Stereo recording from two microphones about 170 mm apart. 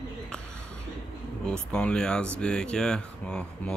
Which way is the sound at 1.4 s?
5° left (ahead or behind).